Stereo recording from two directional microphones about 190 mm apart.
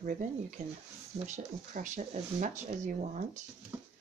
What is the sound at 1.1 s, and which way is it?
Speech, 40° right (ahead or behind).